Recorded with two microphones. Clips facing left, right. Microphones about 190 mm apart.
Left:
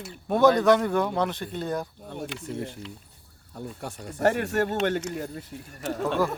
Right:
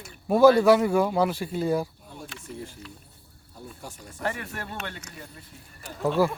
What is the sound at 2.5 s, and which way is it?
Speech, 65° left (ahead or behind).